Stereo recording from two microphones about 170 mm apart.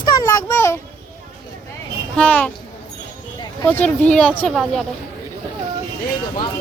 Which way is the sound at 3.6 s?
10° left (ahead or behind).